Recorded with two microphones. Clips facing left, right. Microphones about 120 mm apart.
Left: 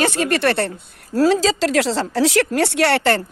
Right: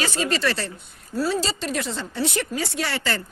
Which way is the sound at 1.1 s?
90° left.